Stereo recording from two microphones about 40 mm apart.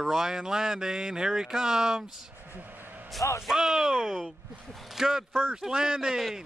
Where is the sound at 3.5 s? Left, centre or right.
Centre.